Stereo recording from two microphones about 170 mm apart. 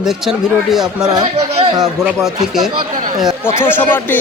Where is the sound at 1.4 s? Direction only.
40° right (ahead or behind).